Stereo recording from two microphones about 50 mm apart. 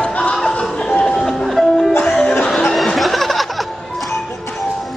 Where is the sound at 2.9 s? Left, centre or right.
Centre.